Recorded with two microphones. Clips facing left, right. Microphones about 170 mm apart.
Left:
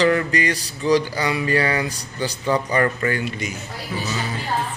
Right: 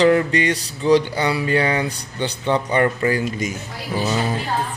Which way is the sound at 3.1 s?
40° right (ahead or behind).